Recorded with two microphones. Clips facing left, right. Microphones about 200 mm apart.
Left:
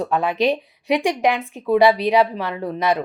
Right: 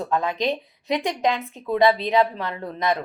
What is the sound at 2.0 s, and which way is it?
Speech, 15° left (ahead or behind).